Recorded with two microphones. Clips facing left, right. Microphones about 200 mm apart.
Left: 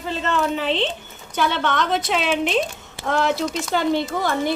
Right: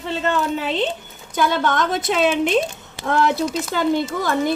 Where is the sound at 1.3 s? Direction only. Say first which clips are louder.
Right 2 dB; 45° right (ahead or behind).